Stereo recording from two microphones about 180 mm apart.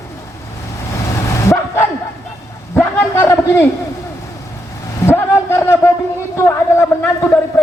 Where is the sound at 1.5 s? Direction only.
15° left (ahead or behind).